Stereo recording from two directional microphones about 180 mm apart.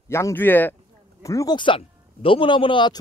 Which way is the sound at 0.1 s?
15° left (ahead or behind).